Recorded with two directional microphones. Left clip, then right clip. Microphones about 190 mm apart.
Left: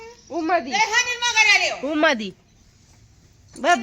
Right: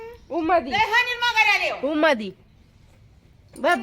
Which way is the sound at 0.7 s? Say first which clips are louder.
Even; 35° right (ahead or behind).